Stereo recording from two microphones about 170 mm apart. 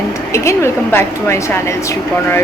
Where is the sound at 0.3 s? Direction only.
15° left (ahead or behind).